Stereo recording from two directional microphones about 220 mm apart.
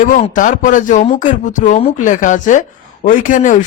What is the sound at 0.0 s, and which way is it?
Speech, 35° left (ahead or behind).